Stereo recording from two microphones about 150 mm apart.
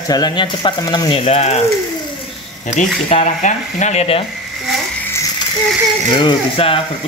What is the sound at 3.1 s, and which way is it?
Speech, 50° left (ahead or behind).